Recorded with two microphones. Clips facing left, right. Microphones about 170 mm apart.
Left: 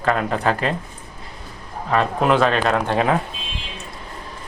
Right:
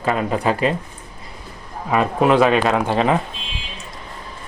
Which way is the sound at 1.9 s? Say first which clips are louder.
Right 2 dB; 5° right (ahead or behind).